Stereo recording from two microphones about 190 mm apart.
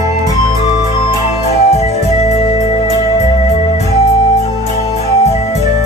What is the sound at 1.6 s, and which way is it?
Music, 35° left (ahead or behind).